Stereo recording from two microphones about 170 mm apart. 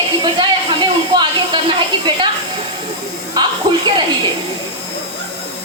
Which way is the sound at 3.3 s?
25° right (ahead or behind).